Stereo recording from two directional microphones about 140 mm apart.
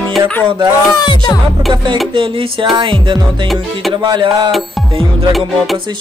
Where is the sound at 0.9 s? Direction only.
30° left (ahead or behind).